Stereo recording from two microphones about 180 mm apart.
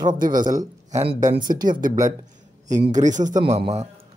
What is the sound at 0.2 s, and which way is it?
Speech, 50° right (ahead or behind).